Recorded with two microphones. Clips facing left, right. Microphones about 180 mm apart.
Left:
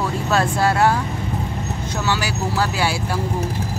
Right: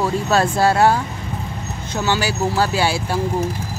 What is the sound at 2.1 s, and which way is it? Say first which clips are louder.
Speech: right 4 dB; 30° right (ahead or behind).